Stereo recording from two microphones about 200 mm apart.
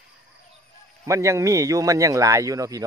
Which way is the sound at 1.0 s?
15° right (ahead or behind).